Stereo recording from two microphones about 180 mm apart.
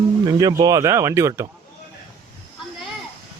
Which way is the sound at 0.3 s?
20° right (ahead or behind).